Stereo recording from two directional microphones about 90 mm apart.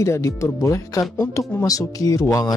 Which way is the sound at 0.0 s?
35° left (ahead or behind).